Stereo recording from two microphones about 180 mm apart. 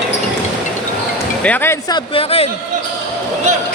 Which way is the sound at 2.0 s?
30° left (ahead or behind).